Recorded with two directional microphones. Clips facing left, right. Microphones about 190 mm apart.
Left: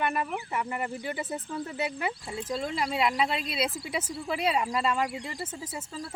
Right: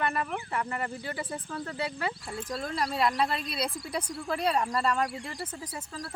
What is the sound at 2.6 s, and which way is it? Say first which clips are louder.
Speech: even; centre (ahead or behind).